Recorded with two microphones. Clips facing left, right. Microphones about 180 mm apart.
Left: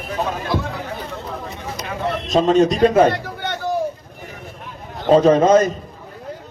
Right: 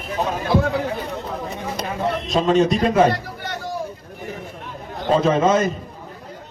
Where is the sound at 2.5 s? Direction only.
Centre (ahead or behind).